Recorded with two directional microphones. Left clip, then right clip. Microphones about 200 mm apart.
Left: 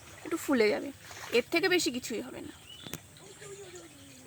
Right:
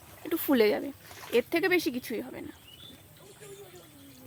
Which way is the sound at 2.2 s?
25° right (ahead or behind).